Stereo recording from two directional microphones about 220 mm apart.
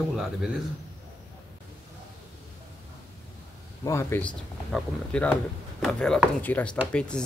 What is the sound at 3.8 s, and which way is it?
A man's voice, 10° left (ahead or behind).